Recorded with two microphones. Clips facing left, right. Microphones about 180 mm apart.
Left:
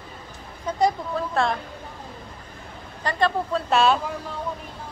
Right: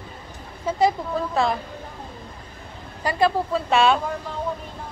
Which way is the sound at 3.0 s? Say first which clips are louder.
Right 2 dB; 10° right (ahead or behind).